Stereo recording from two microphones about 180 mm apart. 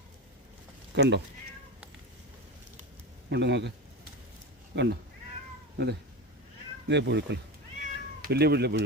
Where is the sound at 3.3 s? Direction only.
75° right (ahead or behind).